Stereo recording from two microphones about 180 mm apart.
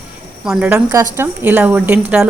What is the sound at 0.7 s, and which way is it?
A woman's voice, 15° right (ahead or behind).